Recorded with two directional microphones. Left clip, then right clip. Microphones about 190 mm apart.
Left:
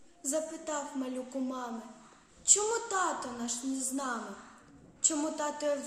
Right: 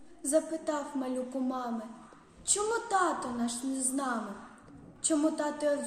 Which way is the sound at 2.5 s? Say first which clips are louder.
Even; 5° left (ahead or behind).